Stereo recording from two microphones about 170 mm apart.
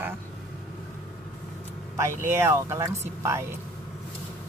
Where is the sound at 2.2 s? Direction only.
15° right (ahead or behind).